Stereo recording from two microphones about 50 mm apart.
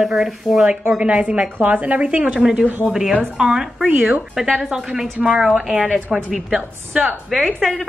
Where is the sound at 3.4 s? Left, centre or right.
Centre.